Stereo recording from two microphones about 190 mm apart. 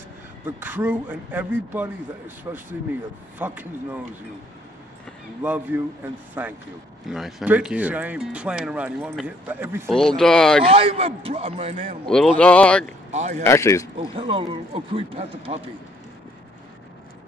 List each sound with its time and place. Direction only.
0.6 s speech: 10° right (ahead or behind)
5.4 s speech: 10° right (ahead or behind)
9.8 s speech: centre (ahead or behind)
10.6 s speech: 30° right (ahead or behind)
12.4 s speech: 5° left (ahead or behind)
13.1 s speech: 40° right (ahead or behind)
13.4 s a man's voice: 15° left (ahead or behind)
13.9 s speech: 30° right (ahead or behind)